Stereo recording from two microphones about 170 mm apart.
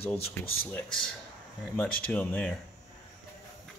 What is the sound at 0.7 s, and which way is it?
Speech, 5° left (ahead or behind).